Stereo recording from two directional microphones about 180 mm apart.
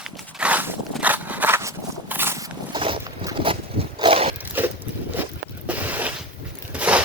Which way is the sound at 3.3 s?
30° right (ahead or behind).